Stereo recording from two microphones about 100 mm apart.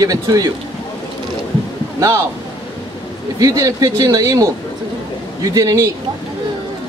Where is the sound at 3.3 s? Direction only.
35° right (ahead or behind).